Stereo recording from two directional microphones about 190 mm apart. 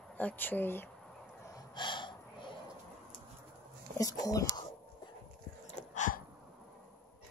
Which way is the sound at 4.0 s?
20° left (ahead or behind).